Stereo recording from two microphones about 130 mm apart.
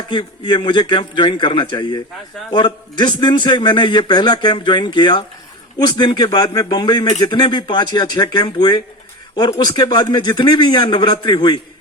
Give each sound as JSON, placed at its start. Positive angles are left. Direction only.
{"t": 0.1, "sound": "a man's voice", "side_deg": 35}